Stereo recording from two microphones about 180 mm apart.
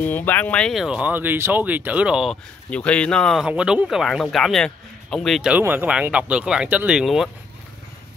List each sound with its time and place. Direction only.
0.0 s speech: 10° left (ahead or behind)
2.7 s speech: 5° left (ahead or behind)